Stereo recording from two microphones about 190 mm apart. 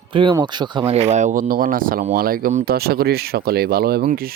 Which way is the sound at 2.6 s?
55° right (ahead or behind).